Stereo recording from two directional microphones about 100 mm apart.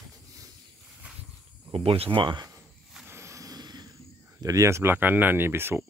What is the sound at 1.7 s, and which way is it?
Speech, 70° right (ahead or behind).